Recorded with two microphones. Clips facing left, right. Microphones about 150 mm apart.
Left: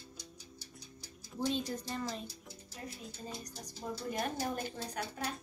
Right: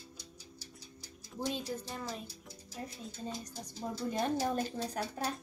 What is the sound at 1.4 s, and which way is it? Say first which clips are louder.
Speech: left 2 dB; 10° right (ahead or behind).